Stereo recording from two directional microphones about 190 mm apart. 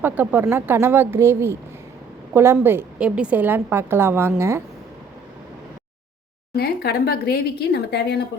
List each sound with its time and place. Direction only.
0.0 s a woman's voice: 10° right (ahead or behind)
6.6 s speech: 55° left (ahead or behind)